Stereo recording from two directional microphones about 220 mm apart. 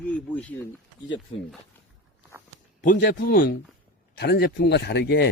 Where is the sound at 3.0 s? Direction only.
50° left (ahead or behind).